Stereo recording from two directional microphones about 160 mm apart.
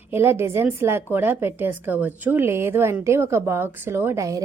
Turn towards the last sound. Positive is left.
turn(degrees=-20)  # may be behind; listen again after turning